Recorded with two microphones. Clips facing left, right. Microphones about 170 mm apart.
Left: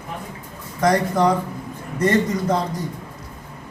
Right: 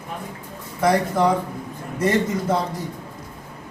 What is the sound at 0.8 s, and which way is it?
A man's voice, 5° right (ahead or behind).